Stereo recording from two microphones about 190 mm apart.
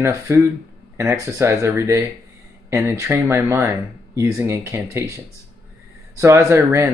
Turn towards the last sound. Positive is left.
turn(degrees=-15)  # may be behind; listen again after turning